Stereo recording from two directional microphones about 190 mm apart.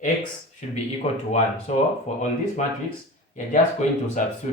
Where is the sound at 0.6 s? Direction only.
40° left (ahead or behind).